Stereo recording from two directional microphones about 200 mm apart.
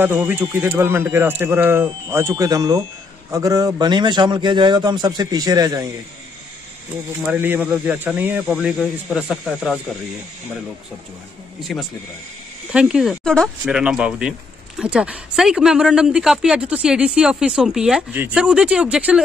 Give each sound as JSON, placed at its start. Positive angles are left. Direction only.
{"t": 0.0, "sound": "a man's voice", "side_deg": -10}
{"t": 7.2, "sound": "speech", "side_deg": -10}
{"t": 11.7, "sound": "speech", "side_deg": 0}